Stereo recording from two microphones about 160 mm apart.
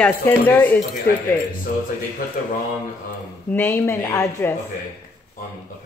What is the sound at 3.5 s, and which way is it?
Speech, 10° left (ahead or behind).